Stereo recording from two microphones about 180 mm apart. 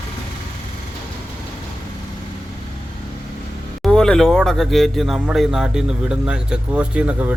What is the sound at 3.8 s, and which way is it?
A man's voice, 5° left (ahead or behind).